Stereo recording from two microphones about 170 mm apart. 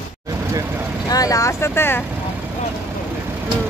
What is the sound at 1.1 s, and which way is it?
Vehicle, 20° left (ahead or behind).